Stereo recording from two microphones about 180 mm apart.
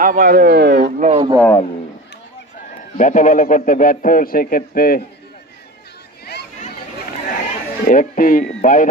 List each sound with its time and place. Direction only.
0.0 s speech: 50° right (ahead or behind)
1.0 s speech: 35° right (ahead or behind)
3.0 s a man's voice: 45° left (ahead or behind)
7.2 s a sound: 50° left (ahead or behind)